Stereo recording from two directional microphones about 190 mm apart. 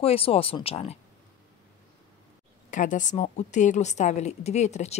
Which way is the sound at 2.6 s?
40° left (ahead or behind).